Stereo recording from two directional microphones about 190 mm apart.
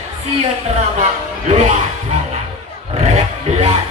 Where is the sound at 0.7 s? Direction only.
35° right (ahead or behind).